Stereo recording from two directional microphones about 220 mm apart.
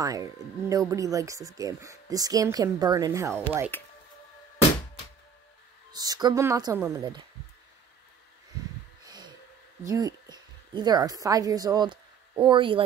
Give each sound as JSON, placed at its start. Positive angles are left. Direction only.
{"t": 0.0, "sound": "speech", "side_deg": -15}
{"t": 3.7, "sound": "speech", "side_deg": 10}
{"t": 5.9, "sound": "speech", "side_deg": -15}
{"t": 9.0, "sound": "a sound", "side_deg": -20}
{"t": 9.8, "sound": "a woman's voice", "side_deg": -15}